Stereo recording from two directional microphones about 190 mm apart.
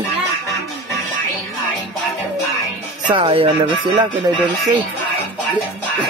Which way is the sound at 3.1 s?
30° right (ahead or behind).